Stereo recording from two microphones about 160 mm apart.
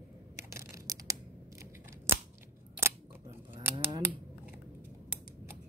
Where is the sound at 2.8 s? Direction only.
15° right (ahead or behind).